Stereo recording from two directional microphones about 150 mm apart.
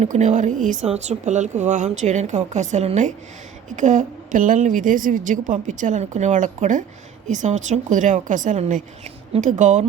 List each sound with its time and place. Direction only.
0.0 s a woman's voice: 55° right (ahead or behind)